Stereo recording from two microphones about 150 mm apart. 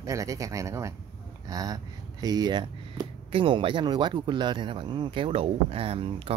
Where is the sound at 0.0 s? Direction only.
20° right (ahead or behind).